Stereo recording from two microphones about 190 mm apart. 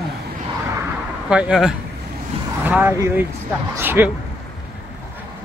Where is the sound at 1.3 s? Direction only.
5° right (ahead or behind).